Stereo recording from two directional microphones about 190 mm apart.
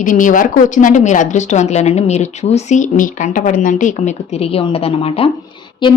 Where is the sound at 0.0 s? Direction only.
45° left (ahead or behind).